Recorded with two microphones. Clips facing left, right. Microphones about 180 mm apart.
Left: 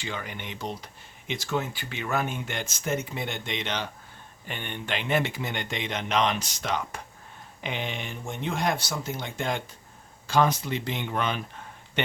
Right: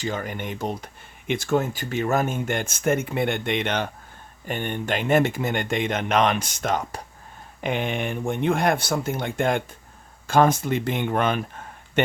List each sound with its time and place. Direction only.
0.0 s speech: 45° right (ahead or behind)